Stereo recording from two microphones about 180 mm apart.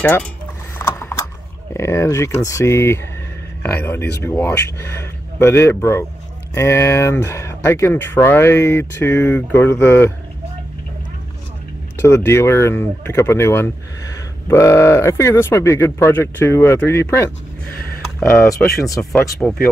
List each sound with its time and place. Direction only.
0.0 s speech: 10° left (ahead or behind)
0.7 s a sound: 15° left (ahead or behind)
3.6 s speech: 10° left (ahead or behind)
12.0 s speech: 15° left (ahead or behind)
18.3 s speech: 10° left (ahead or behind)